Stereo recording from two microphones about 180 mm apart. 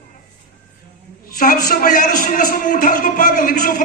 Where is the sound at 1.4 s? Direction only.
50° left (ahead or behind).